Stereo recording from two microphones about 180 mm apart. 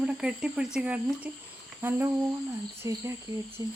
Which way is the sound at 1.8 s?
10° right (ahead or behind).